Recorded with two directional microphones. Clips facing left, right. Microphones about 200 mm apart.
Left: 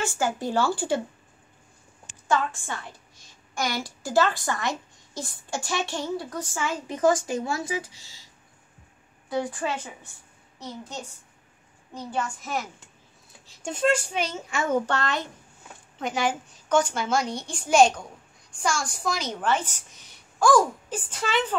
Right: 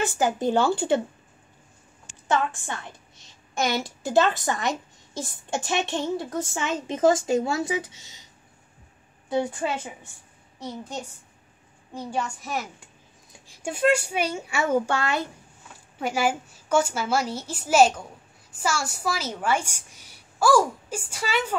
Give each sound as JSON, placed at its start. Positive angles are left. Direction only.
{"t": 0.0, "sound": "a woman's voice", "side_deg": -20}
{"t": 2.2, "sound": "a woman's voice", "side_deg": -20}
{"t": 9.3, "sound": "a woman's voice", "side_deg": -25}
{"t": 13.5, "sound": "a woman's voice", "side_deg": -10}